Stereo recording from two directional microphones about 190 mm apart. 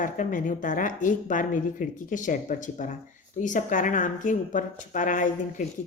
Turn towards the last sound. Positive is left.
turn(degrees=40)  # may be behind; listen again after turning